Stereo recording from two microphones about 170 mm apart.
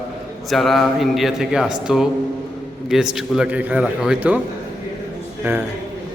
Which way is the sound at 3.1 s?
5° right (ahead or behind).